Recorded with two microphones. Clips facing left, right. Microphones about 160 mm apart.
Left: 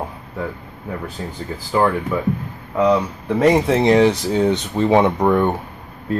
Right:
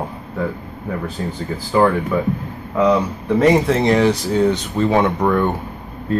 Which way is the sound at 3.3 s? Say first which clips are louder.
Even; 15° left (ahead or behind).